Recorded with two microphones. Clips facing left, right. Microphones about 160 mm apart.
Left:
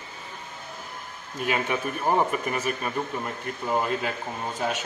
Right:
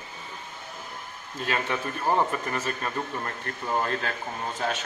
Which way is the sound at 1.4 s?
15° left (ahead or behind).